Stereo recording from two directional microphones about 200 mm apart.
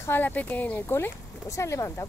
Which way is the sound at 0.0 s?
10° left (ahead or behind).